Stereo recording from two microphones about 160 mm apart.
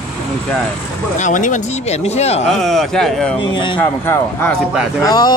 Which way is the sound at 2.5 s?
Centre (ahead or behind).